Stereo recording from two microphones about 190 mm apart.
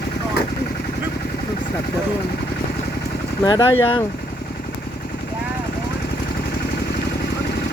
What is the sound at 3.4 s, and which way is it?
Speech, 20° left (ahead or behind).